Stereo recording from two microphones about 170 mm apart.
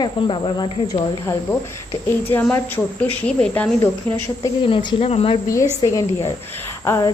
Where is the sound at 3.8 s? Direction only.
15° left (ahead or behind).